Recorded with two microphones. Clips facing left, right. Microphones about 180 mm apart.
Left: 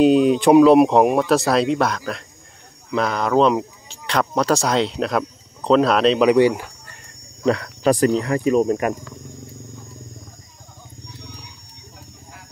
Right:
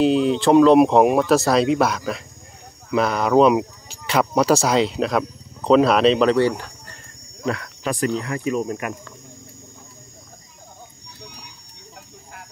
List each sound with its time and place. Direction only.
0.0 s speech: 15° left (ahead or behind); by 6.2 s centre (ahead or behind)
6.2 s speech: 10° left (ahead or behind)
7.4 s speech: 35° left (ahead or behind)